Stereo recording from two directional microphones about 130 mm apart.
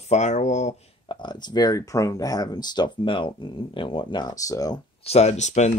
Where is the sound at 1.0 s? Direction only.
35° left (ahead or behind).